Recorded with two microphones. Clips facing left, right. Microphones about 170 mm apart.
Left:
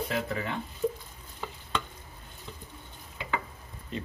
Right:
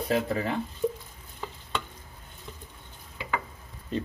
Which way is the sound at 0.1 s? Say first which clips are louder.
Right 5 dB; 35° right (ahead or behind).